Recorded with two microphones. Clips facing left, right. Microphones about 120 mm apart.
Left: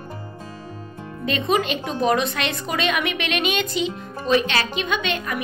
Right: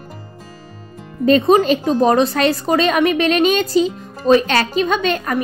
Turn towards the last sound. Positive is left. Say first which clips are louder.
# right 7 dB
turn(degrees=-40)  # may be behind; listen again after turning